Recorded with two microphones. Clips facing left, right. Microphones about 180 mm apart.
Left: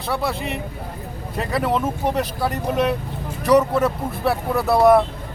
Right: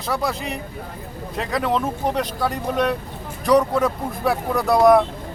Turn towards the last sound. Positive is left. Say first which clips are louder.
# even
turn(degrees=5)  # may be behind; listen again after turning